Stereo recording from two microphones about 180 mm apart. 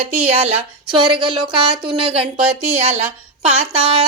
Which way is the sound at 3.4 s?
35° right (ahead or behind).